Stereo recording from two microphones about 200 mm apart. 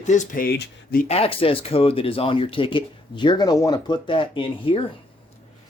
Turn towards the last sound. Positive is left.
turn(degrees=25)  # may be behind; listen again after turning